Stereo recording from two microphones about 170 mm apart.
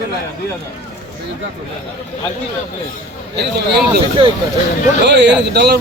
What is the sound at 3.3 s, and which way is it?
Speech, 80° right.